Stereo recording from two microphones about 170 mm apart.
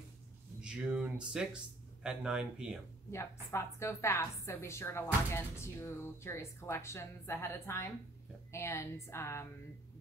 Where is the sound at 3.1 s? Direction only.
15° left (ahead or behind).